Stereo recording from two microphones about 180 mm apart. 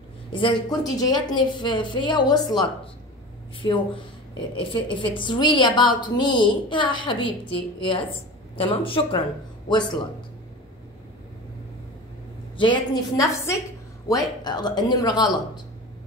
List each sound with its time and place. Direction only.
0.3 s a woman's voice: 30° left (ahead or behind)
12.5 s a woman's voice: 25° left (ahead or behind)